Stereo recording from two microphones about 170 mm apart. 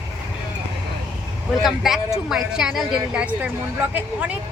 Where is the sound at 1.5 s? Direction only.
Centre (ahead or behind).